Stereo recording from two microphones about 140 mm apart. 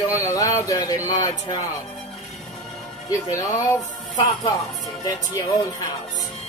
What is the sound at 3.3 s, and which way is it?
Speech, 25° left (ahead or behind).